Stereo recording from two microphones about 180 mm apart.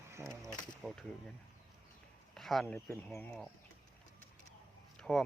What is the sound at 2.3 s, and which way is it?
Speech, centre (ahead or behind).